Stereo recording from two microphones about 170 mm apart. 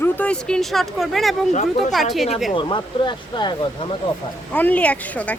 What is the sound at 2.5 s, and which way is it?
Speech, 30° left (ahead or behind).